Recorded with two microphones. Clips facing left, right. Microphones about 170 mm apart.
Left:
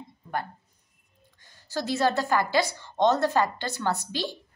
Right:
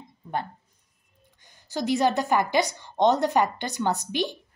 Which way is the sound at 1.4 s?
15° right (ahead or behind).